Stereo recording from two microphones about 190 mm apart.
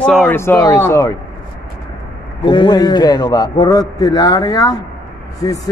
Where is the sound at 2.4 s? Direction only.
25° left (ahead or behind).